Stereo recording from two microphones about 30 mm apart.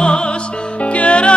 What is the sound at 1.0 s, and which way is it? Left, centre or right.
Music, left.